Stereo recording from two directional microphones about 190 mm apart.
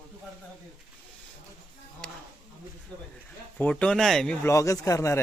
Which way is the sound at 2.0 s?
5° left (ahead or behind).